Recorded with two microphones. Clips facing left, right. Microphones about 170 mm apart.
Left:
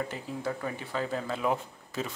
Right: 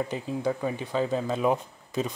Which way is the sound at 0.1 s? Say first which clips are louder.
Right 6 dB; 15° right (ahead or behind).